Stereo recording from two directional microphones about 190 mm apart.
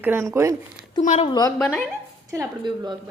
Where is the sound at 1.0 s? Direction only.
40° left (ahead or behind).